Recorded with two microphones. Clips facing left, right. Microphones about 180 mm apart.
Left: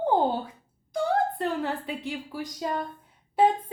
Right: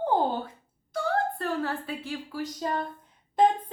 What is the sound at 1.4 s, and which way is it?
A woman's voice, 20° left (ahead or behind).